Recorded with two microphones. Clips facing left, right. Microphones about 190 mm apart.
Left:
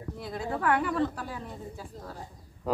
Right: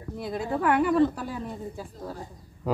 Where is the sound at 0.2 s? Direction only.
15° right (ahead or behind).